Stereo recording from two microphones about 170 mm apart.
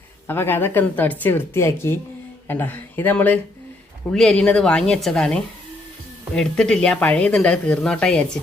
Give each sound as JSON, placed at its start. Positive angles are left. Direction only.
{"t": 0.3, "sound": "speech", "side_deg": 10}